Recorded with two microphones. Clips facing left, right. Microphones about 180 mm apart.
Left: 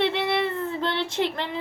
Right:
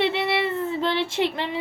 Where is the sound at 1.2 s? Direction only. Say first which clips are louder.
Right 2 dB; 70° right (ahead or behind).